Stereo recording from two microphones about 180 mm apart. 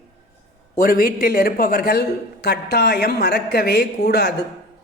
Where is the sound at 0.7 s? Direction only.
55° left (ahead or behind).